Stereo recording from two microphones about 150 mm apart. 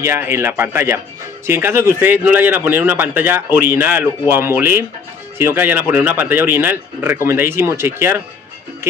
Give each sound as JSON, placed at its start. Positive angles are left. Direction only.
{"t": 0.0, "sound": "speech", "side_deg": -15}